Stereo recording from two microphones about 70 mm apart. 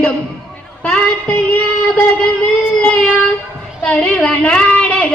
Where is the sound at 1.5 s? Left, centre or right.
Left.